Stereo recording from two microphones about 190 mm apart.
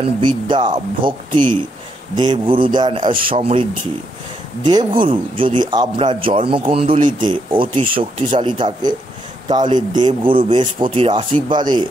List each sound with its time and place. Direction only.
0.2 s a man's voice: 25° right (ahead or behind)
4.6 s a man's voice: 25° right (ahead or behind)